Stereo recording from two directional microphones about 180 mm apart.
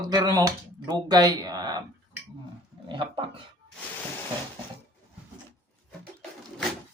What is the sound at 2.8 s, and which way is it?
Speech, 30° right (ahead or behind).